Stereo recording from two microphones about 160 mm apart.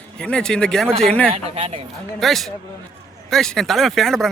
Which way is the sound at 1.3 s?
40° right (ahead or behind).